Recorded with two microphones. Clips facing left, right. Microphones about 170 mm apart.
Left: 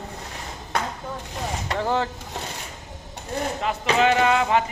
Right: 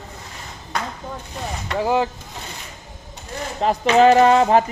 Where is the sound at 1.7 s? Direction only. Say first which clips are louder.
Right 5 dB; 10° right (ahead or behind).